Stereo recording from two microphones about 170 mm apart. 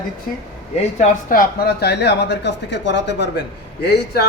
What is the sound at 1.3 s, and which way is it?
Speech, 60° left (ahead or behind).